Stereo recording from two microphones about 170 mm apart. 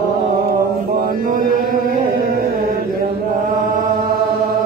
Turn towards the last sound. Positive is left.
turn(degrees=-60)  # may be behind; listen again after turning